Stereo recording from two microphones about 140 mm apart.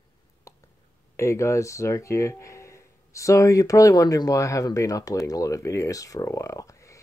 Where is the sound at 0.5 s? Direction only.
20° left (ahead or behind).